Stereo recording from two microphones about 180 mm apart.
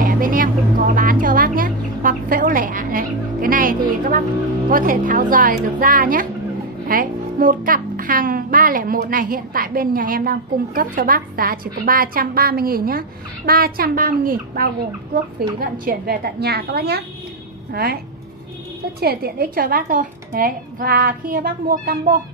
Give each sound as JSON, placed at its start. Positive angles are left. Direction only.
{"t": 0.0, "sound": "music", "side_deg": -50}
{"t": 4.6, "sound": "a child's voice", "side_deg": -50}
{"t": 18.9, "sound": "a child's voice", "side_deg": -60}